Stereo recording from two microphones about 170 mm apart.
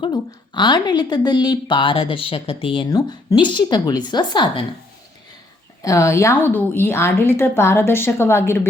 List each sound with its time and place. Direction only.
0.0 s a woman's voice: 25° left (ahead or behind)
5.8 s a woman's voice: 20° left (ahead or behind)